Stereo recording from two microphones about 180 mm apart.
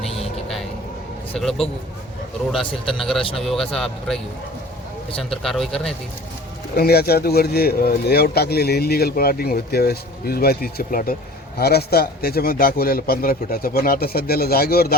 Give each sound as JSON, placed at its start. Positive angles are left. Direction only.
{"t": 0.4, "sound": "vehicle", "side_deg": 0}
{"t": 1.4, "sound": "speech", "side_deg": 5}
{"t": 3.0, "sound": "speech", "side_deg": 0}
{"t": 5.4, "sound": "speech", "side_deg": 0}
{"t": 6.7, "sound": "speech", "side_deg": 60}